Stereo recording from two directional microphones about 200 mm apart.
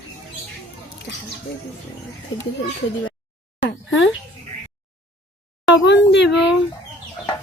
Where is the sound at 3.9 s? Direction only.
70° left (ahead or behind).